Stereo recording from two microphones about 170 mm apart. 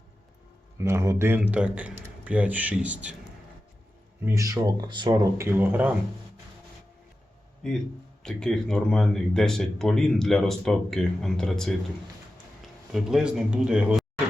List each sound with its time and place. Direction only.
0.8 s a man's voice: 15° right (ahead or behind)
4.4 s speech: 20° right (ahead or behind)
7.6 s speech: 5° left (ahead or behind)